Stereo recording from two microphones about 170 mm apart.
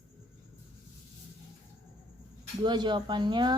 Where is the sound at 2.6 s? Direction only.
25° right (ahead or behind).